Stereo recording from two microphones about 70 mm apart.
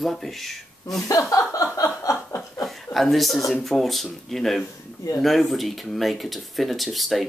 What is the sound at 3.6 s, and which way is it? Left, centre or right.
Speech, centre.